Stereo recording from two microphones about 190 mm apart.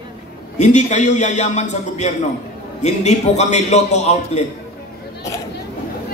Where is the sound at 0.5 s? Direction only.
40° left (ahead or behind).